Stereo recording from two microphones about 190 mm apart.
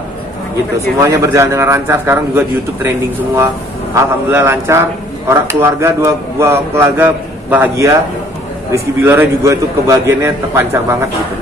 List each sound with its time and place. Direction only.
0.7 s a man's voice: 15° right (ahead or behind)
3.9 s a man's voice: 10° right (ahead or behind)